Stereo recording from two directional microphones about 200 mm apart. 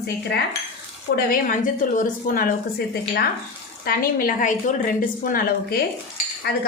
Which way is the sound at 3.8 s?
45° left (ahead or behind).